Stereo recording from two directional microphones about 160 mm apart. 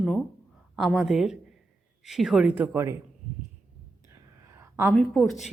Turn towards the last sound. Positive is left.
turn(degrees=5)  # may be behind; listen again after turning